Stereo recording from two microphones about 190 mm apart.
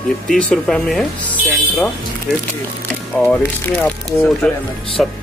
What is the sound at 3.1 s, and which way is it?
Speech, 10° left (ahead or behind).